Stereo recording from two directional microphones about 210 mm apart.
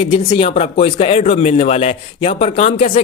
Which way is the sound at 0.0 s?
25° left (ahead or behind).